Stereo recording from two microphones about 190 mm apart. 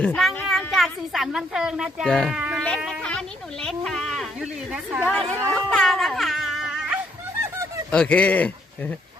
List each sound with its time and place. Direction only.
0.0 s a woman's voice: 5° left (ahead or behind)
2.3 s insect: 5° right (ahead or behind)
2.6 s a sound: centre (ahead or behind)
5.0 s speech: 5° left (ahead or behind)
5.5 s music: 5° left (ahead or behind)
7.9 s speech: 5° left (ahead or behind)